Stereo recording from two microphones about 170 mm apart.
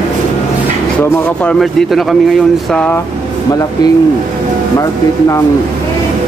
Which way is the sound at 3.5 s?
20° left (ahead or behind).